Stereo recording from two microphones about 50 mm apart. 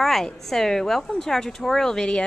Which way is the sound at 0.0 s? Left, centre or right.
Centre.